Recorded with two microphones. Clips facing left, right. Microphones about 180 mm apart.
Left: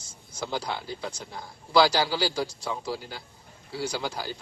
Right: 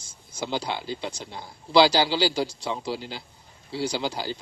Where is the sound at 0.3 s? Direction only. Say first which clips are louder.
Right 2 dB; 20° right (ahead or behind).